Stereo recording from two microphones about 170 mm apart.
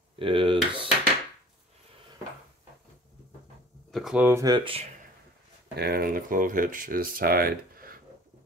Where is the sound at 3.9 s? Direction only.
5° right (ahead or behind).